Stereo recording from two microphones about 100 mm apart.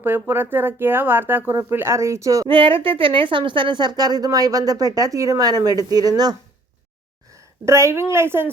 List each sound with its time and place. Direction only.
0.0 s speech: 20° right (ahead or behind)
2.5 s a woman's voice: 60° right (ahead or behind); by 6.3 s 40° right (ahead or behind)
7.3 s a sound: 30° right (ahead or behind)
8.1 s speech: 25° right (ahead or behind)